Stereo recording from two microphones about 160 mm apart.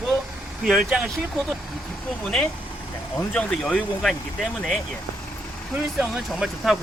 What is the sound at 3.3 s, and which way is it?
Speech, 5° left (ahead or behind).